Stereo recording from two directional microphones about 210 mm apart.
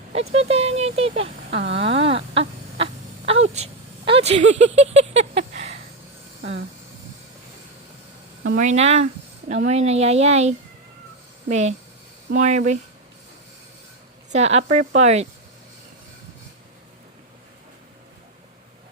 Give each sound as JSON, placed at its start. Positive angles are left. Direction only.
{"t": 0.3, "sound": "speech", "side_deg": -30}
{"t": 1.8, "sound": "wail", "side_deg": -25}
{"t": 3.5, "sound": "a sound", "side_deg": -30}
{"t": 8.5, "sound": "speech", "side_deg": -35}
{"t": 14.3, "sound": "speech", "side_deg": -30}